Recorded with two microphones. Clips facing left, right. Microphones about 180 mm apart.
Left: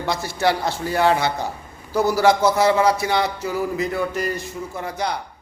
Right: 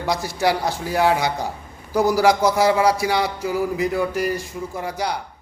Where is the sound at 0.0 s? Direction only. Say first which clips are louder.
Even; 15° right (ahead or behind).